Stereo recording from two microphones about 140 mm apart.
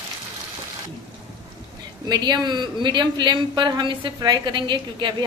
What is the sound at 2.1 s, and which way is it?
A woman's voice, 30° right (ahead or behind).